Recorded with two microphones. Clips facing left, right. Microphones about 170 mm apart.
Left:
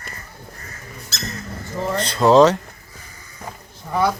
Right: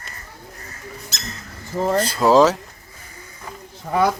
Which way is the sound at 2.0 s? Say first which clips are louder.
Left 2 dB; 5° right (ahead or behind).